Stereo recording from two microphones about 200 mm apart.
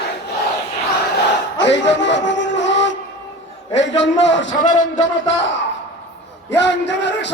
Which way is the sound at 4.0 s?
65° left (ahead or behind).